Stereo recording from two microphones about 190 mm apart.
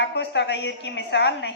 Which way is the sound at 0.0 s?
65° left (ahead or behind).